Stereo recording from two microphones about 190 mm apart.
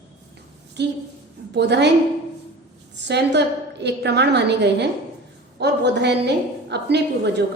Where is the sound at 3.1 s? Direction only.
65° right (ahead or behind).